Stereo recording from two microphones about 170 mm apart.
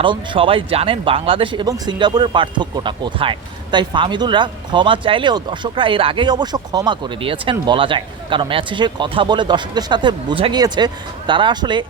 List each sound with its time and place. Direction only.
0.0 s speech: 30° right (ahead or behind)